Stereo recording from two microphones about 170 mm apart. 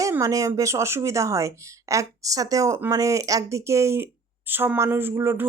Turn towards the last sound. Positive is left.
turn(degrees=-15)  # may be behind; listen again after turning